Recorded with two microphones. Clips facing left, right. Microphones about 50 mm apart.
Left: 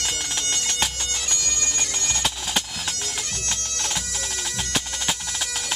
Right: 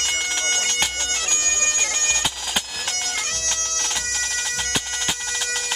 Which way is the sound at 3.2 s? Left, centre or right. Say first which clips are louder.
Right 4 dB; right.